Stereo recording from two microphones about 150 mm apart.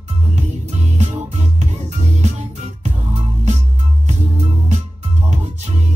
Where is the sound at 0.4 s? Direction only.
50° right (ahead or behind).